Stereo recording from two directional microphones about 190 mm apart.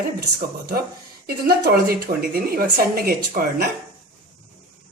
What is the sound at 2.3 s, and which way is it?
Speech, 50° right (ahead or behind).